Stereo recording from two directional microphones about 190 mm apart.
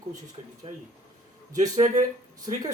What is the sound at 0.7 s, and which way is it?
Speech, 30° right (ahead or behind).